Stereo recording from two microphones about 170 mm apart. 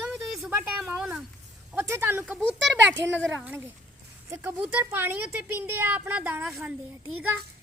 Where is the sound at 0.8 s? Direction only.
5° right (ahead or behind).